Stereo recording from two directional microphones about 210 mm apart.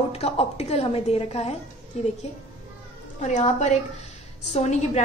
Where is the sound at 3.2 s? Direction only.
35° left (ahead or behind).